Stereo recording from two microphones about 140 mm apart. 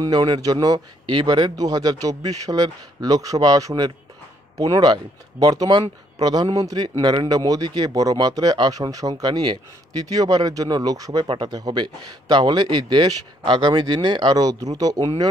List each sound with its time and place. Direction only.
0.0 s speech: 30° right (ahead or behind)
11.2 s a man's voice: 40° right (ahead or behind)